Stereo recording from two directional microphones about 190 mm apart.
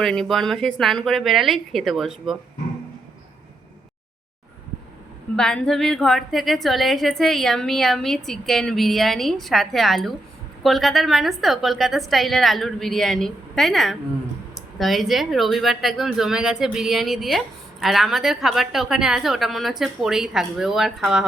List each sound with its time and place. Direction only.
0.0 s speech: centre (ahead or behind)
5.4 s speech: 5° left (ahead or behind)